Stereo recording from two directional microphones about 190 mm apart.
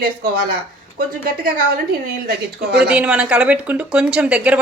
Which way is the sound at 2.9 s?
5° right (ahead or behind).